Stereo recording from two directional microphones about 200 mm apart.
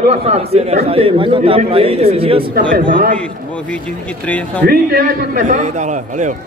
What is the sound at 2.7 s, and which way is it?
Speech, 45° right (ahead or behind).